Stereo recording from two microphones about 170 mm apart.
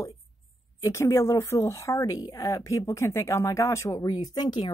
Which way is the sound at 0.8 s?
15° left (ahead or behind).